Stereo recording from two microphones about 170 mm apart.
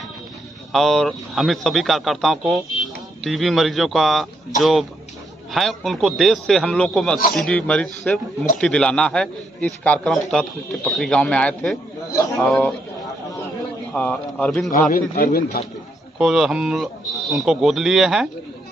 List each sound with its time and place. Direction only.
0.7 s speech: centre (ahead or behind)
13.9 s speech: 10° left (ahead or behind)
14.9 s a man's voice: 55° left (ahead or behind)
16.2 s speech: 5° right (ahead or behind)